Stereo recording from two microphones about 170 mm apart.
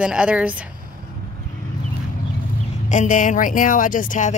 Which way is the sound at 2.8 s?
45° left (ahead or behind).